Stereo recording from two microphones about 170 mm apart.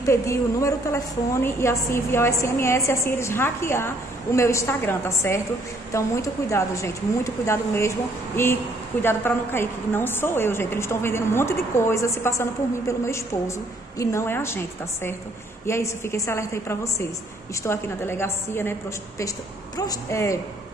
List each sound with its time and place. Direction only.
0.0 s a woman's voice: 15° left (ahead or behind)